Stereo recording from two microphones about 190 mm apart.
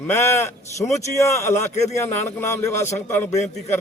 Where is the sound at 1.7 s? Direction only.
35° left (ahead or behind).